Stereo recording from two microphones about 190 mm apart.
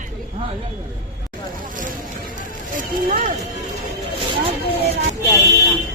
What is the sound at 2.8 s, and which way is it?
Speech, 45° right (ahead or behind).